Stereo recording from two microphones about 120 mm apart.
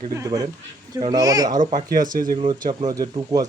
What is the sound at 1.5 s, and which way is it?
Speech, 90° right.